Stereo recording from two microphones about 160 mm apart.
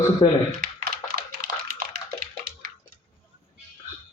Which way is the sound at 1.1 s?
65° right (ahead or behind).